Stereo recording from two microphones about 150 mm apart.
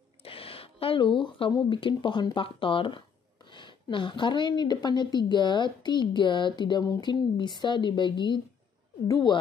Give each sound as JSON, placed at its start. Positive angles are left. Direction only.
{"t": 0.2, "sound": "a woman's voice", "side_deg": 40}